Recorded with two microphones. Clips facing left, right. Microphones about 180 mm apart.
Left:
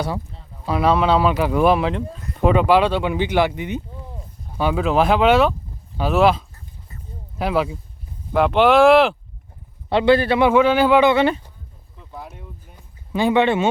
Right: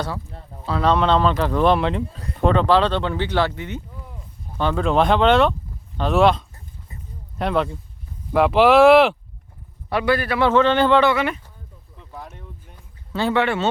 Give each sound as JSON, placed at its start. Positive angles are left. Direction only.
{"t": 0.6, "sound": "speech", "side_deg": 10}
{"t": 9.9, "sound": "a man's voice", "side_deg": 25}
{"t": 10.4, "sound": "speech", "side_deg": 10}
{"t": 11.1, "sound": "a man's voice", "side_deg": 30}
{"t": 12.1, "sound": "a sound", "side_deg": 10}